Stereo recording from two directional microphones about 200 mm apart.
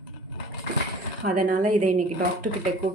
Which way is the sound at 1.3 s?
45° right (ahead or behind).